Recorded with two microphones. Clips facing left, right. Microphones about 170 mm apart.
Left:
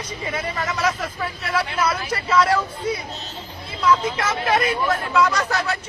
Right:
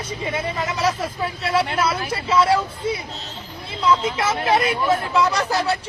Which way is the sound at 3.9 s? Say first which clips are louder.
Even; 10° right (ahead or behind).